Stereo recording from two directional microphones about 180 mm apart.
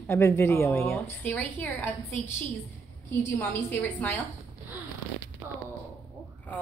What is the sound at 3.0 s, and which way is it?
A woman's voice, 10° left (ahead or behind).